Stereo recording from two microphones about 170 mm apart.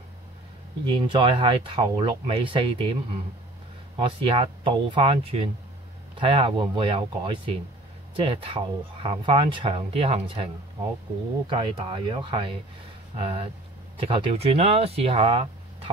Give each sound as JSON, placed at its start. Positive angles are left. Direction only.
{"t": 0.8, "sound": "speech", "side_deg": -30}